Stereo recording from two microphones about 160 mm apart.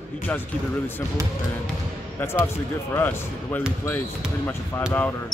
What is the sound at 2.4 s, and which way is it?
Speech, 15° left (ahead or behind).